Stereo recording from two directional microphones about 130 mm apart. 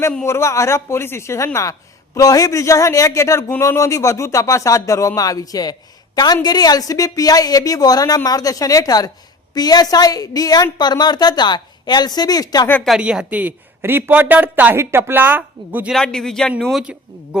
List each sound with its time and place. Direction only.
0.3 s a woman's voice: 20° left (ahead or behind)
12.8 s speech: 5° right (ahead or behind)
15.9 s a man's voice: 5° left (ahead or behind)
16.7 s speech: 10° right (ahead or behind)